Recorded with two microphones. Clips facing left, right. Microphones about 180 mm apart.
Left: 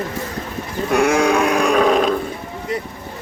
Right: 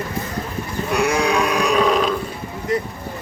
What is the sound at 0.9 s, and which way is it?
Sheep, 50° left (ahead or behind).